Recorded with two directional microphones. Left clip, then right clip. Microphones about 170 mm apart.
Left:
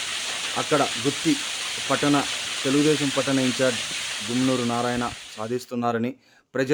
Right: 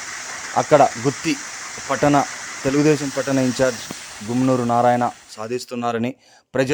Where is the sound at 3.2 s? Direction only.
35° right (ahead or behind).